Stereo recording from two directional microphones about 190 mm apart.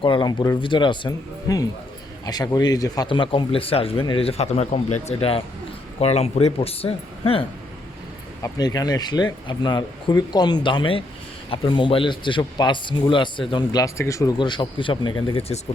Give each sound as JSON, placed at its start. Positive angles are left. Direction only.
{"t": 0.0, "sound": "a man's voice", "side_deg": 25}
{"t": 8.4, "sound": "speech", "side_deg": 20}